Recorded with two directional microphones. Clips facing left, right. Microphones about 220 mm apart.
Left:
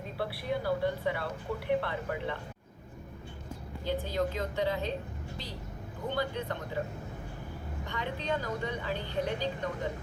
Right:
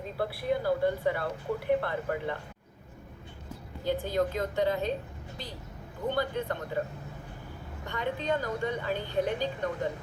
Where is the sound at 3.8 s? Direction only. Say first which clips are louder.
Right 3 dB; 50° right (ahead or behind).